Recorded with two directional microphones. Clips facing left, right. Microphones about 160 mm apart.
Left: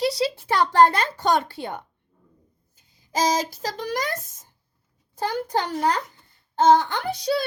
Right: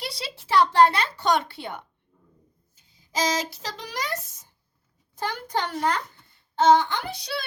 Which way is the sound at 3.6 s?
45° left (ahead or behind).